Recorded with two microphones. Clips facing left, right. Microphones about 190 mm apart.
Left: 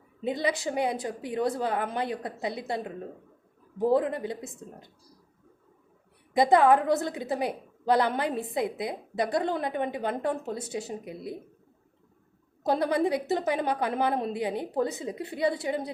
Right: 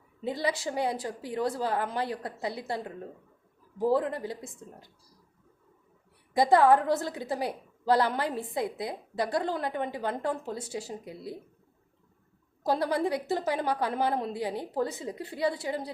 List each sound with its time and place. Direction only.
0.2 s a woman's voice: 20° left (ahead or behind)
6.3 s a woman's voice: 20° left (ahead or behind)
12.6 s a woman's voice: 20° left (ahead or behind)